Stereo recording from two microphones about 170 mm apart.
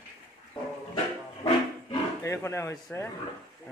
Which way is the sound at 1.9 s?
15° left (ahead or behind).